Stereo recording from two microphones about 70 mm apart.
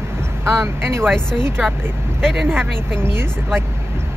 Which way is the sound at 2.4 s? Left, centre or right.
Right.